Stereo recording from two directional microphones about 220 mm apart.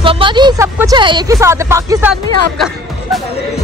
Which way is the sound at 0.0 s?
25° right (ahead or behind).